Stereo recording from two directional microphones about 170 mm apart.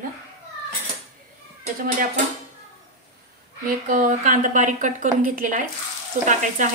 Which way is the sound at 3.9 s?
50° right (ahead or behind).